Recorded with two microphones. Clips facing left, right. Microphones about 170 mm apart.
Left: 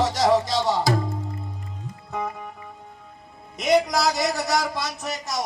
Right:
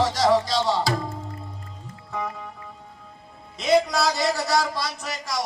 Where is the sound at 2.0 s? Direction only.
20° left (ahead or behind).